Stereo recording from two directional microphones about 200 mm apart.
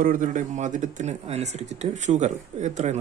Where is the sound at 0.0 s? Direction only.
40° right (ahead or behind).